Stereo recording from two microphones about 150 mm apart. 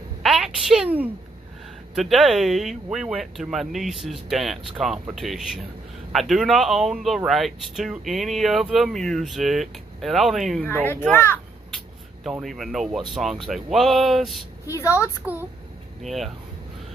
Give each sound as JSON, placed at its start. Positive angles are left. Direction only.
{"t": 0.2, "sound": "a sound", "side_deg": 0}
{"t": 2.0, "sound": "speech", "side_deg": 0}
{"t": 10.6, "sound": "speech", "side_deg": 10}
{"t": 11.7, "sound": "speech", "side_deg": 0}
{"t": 14.7, "sound": "a woman's voice", "side_deg": 20}
{"t": 15.3, "sound": "a woman's voice", "side_deg": -10}